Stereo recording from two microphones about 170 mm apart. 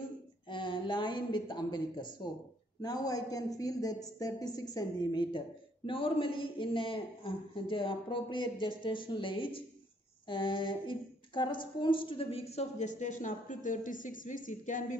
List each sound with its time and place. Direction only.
0.5 s a man's voice: 30° left (ahead or behind); by 15.0 s 50° left (ahead or behind)